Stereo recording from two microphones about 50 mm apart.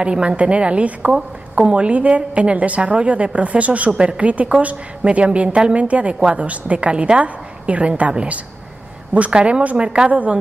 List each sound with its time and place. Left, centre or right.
0.0 s a woman's voice: right